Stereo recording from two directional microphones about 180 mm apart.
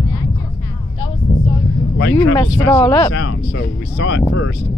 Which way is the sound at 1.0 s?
30° left (ahead or behind).